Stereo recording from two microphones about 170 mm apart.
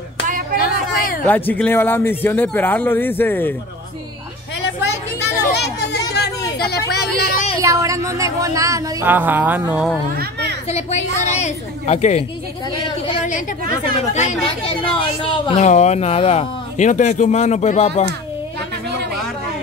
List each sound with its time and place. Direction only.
0.6 s a sound: 60° left (ahead or behind)
1.2 s speech: 10° left (ahead or behind)
4.6 s a sound: 85° left; by 7.4 s 65° left (ahead or behind)
7.6 s speech: 20° right (ahead or behind)
10.7 s speech: 40° left (ahead or behind)
13.9 s speech: 40° left (ahead or behind)
14.4 s speech: 30° left (ahead or behind)